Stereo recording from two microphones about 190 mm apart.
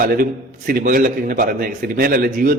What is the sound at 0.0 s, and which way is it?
A man's voice, 50° right (ahead or behind).